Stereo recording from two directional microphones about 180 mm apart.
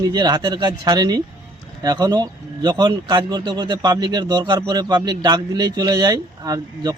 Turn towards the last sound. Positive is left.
turn(degrees=-20)  # may be behind; listen again after turning